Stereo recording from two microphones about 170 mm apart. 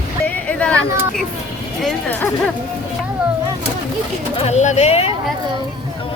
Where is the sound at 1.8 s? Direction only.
5° left (ahead or behind).